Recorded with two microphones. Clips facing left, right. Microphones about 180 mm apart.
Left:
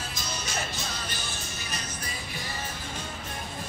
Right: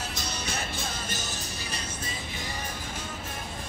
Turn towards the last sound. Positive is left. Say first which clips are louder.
# right 1 dB
turn(degrees=-20)  # may be behind; listen again after turning